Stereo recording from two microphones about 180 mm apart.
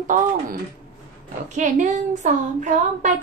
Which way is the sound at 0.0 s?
45° right (ahead or behind).